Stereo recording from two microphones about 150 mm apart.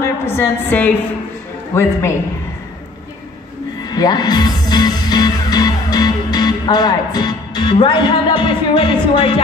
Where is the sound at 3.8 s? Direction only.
25° left (ahead or behind).